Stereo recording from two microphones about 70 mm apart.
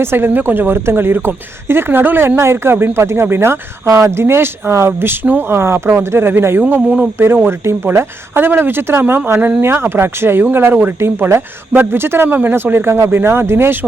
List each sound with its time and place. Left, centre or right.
0.0 s speech: right